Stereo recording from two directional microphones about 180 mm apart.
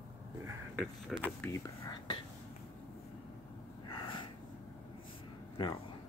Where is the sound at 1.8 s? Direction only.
30° left (ahead or behind).